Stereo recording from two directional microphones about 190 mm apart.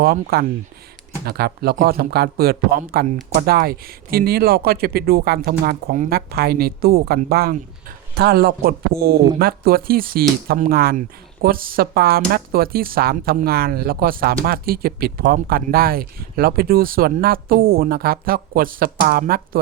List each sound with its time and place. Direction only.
0.0 s a man's voice: 55° right (ahead or behind)